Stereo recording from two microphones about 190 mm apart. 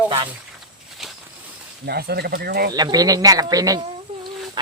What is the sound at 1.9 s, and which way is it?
Speech, 55° right (ahead or behind).